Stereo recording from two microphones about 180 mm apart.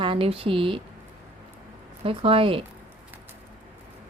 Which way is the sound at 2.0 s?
30° right (ahead or behind).